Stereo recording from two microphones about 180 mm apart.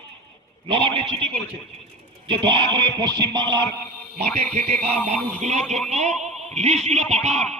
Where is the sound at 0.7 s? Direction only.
30° right (ahead or behind).